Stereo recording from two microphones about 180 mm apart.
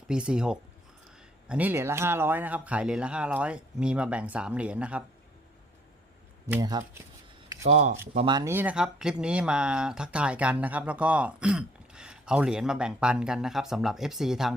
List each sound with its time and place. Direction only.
0.1 s speech: 5° right (ahead or behind)
6.5 s speech: 20° right (ahead or behind)
7.6 s speech: 40° right (ahead or behind)
8.3 s speech: 20° right (ahead or behind)
8.5 s speech: 5° right (ahead or behind)